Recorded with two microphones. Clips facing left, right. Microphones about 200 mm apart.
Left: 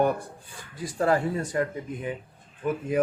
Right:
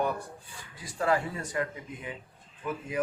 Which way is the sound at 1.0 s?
40° left (ahead or behind).